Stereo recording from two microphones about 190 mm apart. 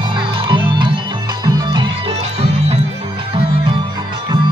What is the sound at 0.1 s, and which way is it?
Music, 25° right (ahead or behind).